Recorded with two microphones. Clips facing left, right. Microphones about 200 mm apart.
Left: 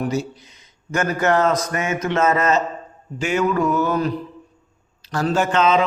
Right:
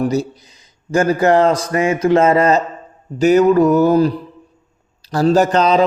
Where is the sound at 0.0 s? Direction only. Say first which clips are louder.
Right 5 dB; 35° right (ahead or behind).